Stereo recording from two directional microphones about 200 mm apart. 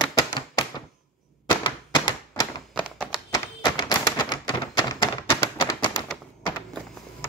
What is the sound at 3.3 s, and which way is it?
Tap, 20° left (ahead or behind).